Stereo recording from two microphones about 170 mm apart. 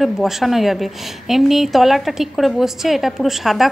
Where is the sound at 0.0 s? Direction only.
Centre (ahead or behind).